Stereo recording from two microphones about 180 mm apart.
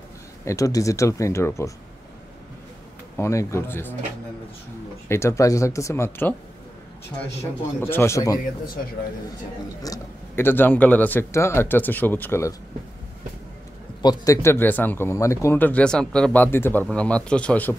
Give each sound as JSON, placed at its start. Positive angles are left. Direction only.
{"t": 0.5, "sound": "speech", "side_deg": 20}
{"t": 3.2, "sound": "speech", "side_deg": 15}
{"t": 5.0, "sound": "speech", "side_deg": 15}
{"t": 7.8, "sound": "speech", "side_deg": 15}
{"t": 9.8, "sound": "speech", "side_deg": 10}
{"t": 14.0, "sound": "speech", "side_deg": 20}